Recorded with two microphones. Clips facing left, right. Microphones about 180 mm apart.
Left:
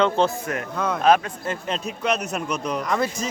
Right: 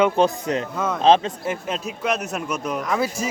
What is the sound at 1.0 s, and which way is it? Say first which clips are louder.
Speech: right 2 dB; 25° right (ahead or behind).